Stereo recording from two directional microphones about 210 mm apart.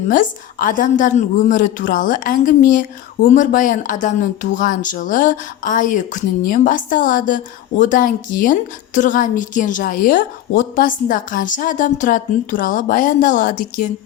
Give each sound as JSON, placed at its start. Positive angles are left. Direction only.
{"t": 0.1, "sound": "a woman's voice", "side_deg": 40}